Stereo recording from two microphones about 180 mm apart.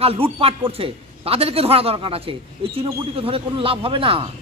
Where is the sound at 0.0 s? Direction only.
35° right (ahead or behind).